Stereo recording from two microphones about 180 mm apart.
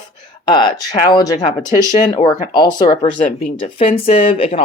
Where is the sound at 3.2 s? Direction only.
35° left (ahead or behind).